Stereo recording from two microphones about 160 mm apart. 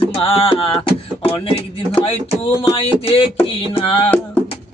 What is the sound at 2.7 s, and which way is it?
Speech, 35° left (ahead or behind).